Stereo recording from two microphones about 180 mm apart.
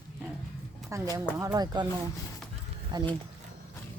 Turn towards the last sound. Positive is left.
turn(degrees=-25)  # may be behind; listen again after turning